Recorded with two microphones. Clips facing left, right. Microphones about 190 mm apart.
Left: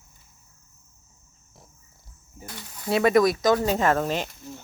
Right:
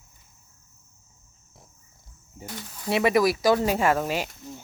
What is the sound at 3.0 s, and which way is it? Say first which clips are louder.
Speech: left 1 dB; 5° right (ahead or behind).